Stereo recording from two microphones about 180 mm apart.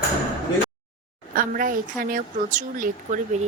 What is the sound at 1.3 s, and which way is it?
Speech, 50° right (ahead or behind).